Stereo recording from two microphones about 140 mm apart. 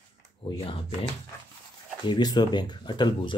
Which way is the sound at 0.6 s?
45° left (ahead or behind).